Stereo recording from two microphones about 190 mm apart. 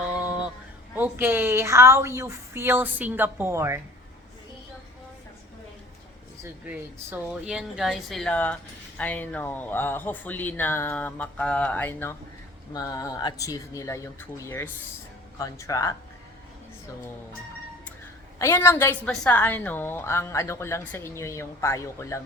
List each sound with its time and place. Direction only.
0.1 s a sound: 5° right (ahead or behind)
0.9 s a woman's voice: 10° right (ahead or behind)
6.4 s a woman's voice: 10° right (ahead or behind); by 16.0 s 15° left (ahead or behind)
18.3 s a woman's voice: 15° left (ahead or behind)